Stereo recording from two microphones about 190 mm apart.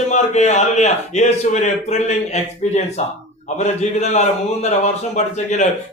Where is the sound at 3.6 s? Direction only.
35° left (ahead or behind).